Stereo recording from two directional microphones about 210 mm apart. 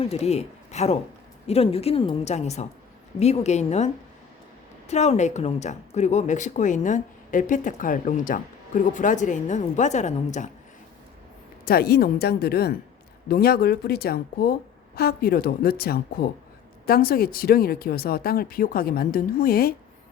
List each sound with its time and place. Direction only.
0.0 s a woman's voice: 30° left (ahead or behind)
11.6 s speech: 45° left (ahead or behind)